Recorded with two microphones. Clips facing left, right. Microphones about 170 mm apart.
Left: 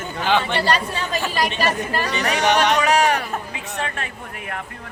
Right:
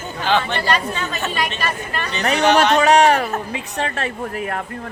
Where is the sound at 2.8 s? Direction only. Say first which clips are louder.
Right 5 dB; 40° right (ahead or behind).